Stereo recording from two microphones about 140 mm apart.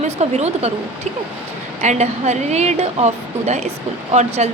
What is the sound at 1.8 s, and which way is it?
Speech, 55° right (ahead or behind).